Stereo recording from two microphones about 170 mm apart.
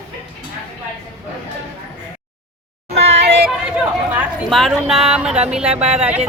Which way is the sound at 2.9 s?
40° right (ahead or behind).